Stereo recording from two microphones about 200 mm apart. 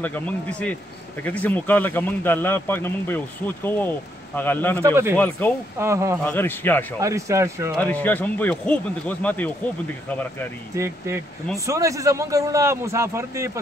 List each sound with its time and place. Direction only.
0.0 s speech: 5° left (ahead or behind)
4.8 s speech: 10° right (ahead or behind)
5.1 s speech: 10° left (ahead or behind)
5.8 s speech: 15° right (ahead or behind)
6.2 s speech: 10° left (ahead or behind)
7.0 s speech: 15° right (ahead or behind)
7.7 s speech: 10° left (ahead or behind)
11.5 s speech: 15° right (ahead or behind)